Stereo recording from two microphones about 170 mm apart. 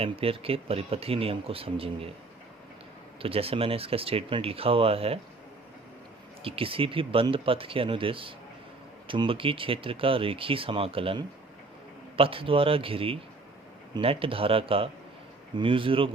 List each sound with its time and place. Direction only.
0.0 s speech: 35° right (ahead or behind)
3.2 s speech: 35° right (ahead or behind)
6.4 s speech: 35° right (ahead or behind)